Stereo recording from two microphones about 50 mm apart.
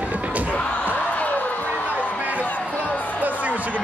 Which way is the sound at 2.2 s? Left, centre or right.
Right.